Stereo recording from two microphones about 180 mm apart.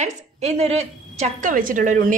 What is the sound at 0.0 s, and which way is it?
A woman's voice, 40° right (ahead or behind).